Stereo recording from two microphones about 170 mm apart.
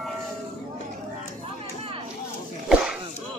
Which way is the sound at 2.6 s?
5° right (ahead or behind).